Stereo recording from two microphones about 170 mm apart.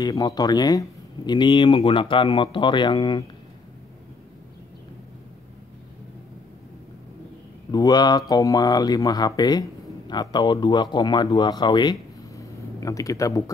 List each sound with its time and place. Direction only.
0.0 s speech: 25° left (ahead or behind)
7.7 s speech: 25° left (ahead or behind)